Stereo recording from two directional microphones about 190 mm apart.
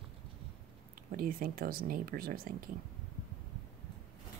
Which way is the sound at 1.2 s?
50° right (ahead or behind).